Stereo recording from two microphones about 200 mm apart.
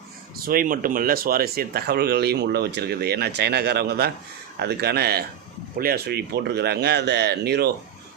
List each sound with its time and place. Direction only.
0.3 s speech: 45° right (ahead or behind)